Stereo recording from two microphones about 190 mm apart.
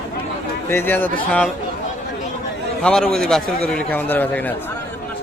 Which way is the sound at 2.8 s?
5° left (ahead or behind).